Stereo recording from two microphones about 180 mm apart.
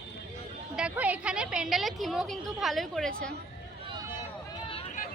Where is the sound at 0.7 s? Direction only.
5° right (ahead or behind).